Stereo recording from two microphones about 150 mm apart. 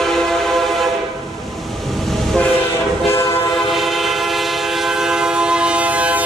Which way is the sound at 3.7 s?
Centre (ahead or behind).